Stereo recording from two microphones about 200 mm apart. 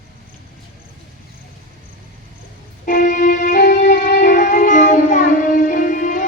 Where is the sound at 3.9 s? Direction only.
60° left (ahead or behind).